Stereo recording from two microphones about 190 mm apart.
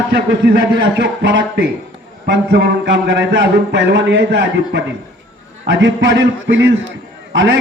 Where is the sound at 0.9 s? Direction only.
80° right.